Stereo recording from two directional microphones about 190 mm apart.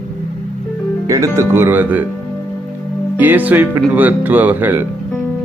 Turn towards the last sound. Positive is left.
turn(degrees=-10)  # may be behind; listen again after turning